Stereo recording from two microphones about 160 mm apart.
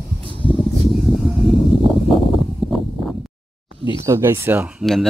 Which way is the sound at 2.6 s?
35° left (ahead or behind).